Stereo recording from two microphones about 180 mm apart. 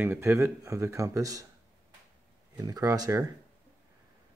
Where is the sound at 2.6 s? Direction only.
20° right (ahead or behind).